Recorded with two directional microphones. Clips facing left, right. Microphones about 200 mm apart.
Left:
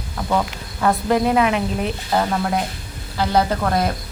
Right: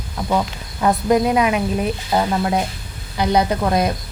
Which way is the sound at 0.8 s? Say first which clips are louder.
Right 2 dB; 15° right (ahead or behind).